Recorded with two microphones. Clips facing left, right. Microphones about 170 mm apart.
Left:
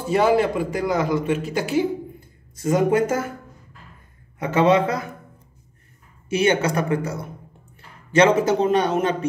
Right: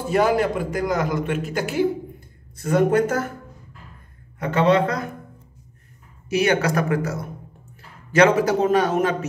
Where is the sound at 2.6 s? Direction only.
10° left (ahead or behind).